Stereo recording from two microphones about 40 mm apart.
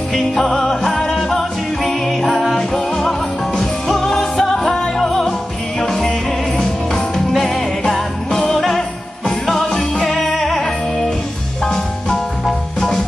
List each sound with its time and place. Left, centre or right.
0.3 s music: centre
7.3 s jingle bell: centre
9.3 s music: centre